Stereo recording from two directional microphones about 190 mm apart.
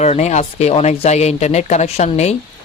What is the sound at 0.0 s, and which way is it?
Speech, 35° left (ahead or behind).